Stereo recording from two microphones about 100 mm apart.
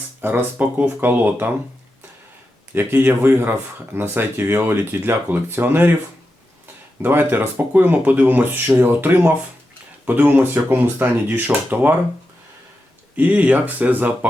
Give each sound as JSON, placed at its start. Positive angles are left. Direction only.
{"t": 0.2, "sound": "speech", "side_deg": -20}
{"t": 2.7, "sound": "speech", "side_deg": -20}
{"t": 7.0, "sound": "speech", "side_deg": -20}
{"t": 13.1, "sound": "speech", "side_deg": -15}